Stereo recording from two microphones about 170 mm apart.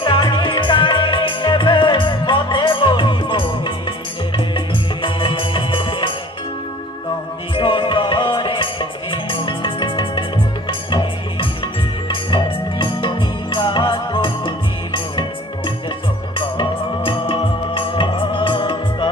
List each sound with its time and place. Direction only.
0.0 s music: 30° left (ahead or behind)
5.0 s music: 30° left (ahead or behind)
7.5 s music: 30° left (ahead or behind)